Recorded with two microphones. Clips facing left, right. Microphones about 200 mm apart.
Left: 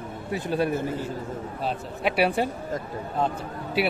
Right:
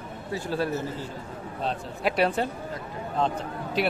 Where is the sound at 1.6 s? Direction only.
5° left (ahead or behind).